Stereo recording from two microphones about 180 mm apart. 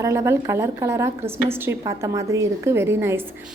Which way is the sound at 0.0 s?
15° right (ahead or behind).